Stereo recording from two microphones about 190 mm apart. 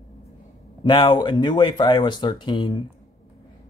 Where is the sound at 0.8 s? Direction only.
25° left (ahead or behind).